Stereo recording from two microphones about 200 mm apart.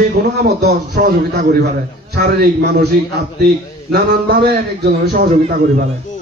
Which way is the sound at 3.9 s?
55° right (ahead or behind).